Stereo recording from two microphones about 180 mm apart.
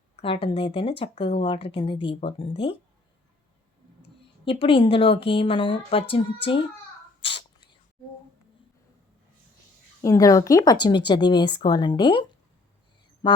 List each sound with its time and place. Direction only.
0.2 s speech: 30° left (ahead or behind)
4.4 s a woman's voice: 30° left (ahead or behind)
7.2 s sneeze: 30° left (ahead or behind)
10.0 s speech: 20° left (ahead or behind)
13.2 s music: 25° left (ahead or behind)